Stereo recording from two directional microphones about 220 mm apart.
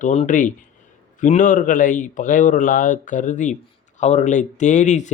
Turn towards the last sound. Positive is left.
turn(degrees=30)  # may be behind; listen again after turning